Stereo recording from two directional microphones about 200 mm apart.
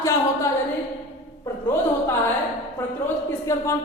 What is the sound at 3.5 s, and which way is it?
Speech, 15° left (ahead or behind).